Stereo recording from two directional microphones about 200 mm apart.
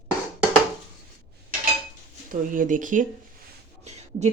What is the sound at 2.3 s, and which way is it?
Speech, 40° right (ahead or behind).